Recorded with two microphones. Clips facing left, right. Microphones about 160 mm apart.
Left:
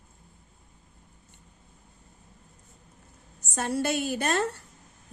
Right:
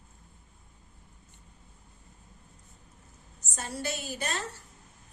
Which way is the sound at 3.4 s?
60° left (ahead or behind).